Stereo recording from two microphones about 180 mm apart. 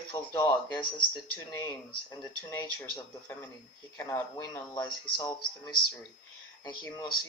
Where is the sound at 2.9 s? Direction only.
10° left (ahead or behind).